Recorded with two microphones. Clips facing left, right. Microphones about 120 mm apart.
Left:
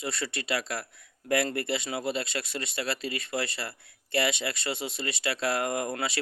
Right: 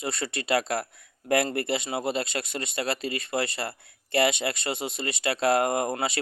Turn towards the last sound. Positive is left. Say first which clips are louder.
# right 4 dB
turn(degrees=-50)  # may be behind; listen again after turning